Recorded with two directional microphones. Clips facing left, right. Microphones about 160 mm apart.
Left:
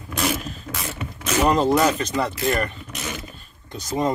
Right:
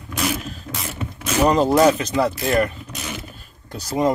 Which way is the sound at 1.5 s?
5° right (ahead or behind).